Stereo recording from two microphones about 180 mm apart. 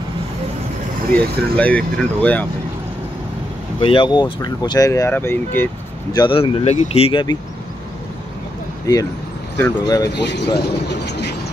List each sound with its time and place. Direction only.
1.1 s speech: 5° left (ahead or behind)
3.8 s speech: 25° left (ahead or behind); by 5.7 s 10° left (ahead or behind)
6.1 s speech: 30° left (ahead or behind)
8.9 s speech: 20° left (ahead or behind)
10.0 s speech: 70° left (ahead or behind)